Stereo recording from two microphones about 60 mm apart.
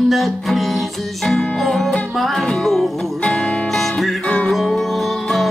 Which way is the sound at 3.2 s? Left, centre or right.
Centre.